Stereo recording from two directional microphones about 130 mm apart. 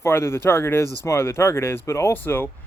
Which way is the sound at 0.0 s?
20° left (ahead or behind).